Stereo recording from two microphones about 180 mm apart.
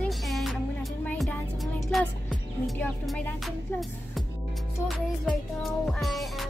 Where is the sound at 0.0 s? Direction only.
Centre (ahead or behind).